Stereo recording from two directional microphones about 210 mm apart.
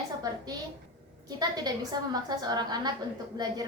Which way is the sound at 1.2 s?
20° right (ahead or behind).